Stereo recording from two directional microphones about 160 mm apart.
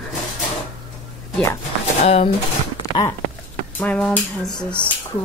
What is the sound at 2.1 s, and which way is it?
Speech, 40° left (ahead or behind).